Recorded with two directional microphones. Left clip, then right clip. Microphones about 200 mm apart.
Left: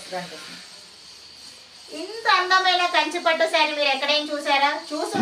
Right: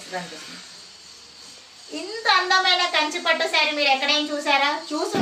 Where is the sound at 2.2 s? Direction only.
15° left (ahead or behind).